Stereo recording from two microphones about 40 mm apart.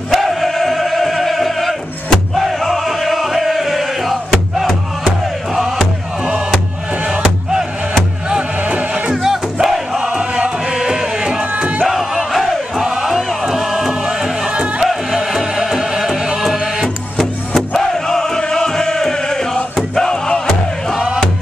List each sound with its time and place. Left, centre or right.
0.1 s music: centre
8.3 s crowd: right
11.5 s music: right
11.8 s a sound: centre
12.7 s crowd: centre
13.4 s music: centre
16.8 s music: centre
18.5 s chant: centre
20.0 s music: centre